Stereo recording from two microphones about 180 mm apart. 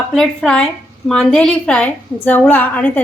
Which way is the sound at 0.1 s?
5° left (ahead or behind).